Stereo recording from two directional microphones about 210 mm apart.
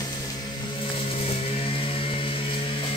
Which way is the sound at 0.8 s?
30° left (ahead or behind).